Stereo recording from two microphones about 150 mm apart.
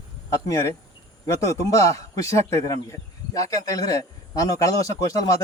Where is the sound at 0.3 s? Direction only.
20° left (ahead or behind).